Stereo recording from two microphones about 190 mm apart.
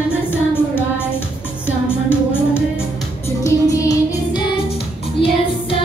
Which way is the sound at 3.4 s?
15° left (ahead or behind).